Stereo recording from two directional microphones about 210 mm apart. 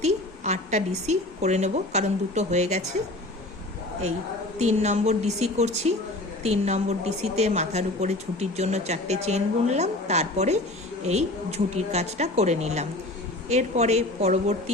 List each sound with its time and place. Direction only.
0.0 s a woman's voice: 30° right (ahead or behind)
4.5 s a woman's voice: 35° right (ahead or behind)